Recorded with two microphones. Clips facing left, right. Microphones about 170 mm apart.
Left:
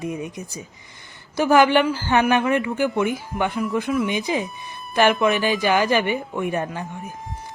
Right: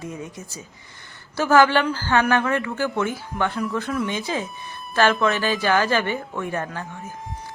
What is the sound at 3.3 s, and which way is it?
Speech, centre (ahead or behind).